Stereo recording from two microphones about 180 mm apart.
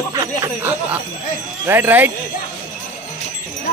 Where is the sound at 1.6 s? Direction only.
10° right (ahead or behind).